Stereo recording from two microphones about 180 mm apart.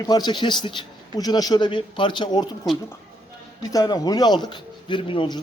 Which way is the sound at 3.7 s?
20° left (ahead or behind).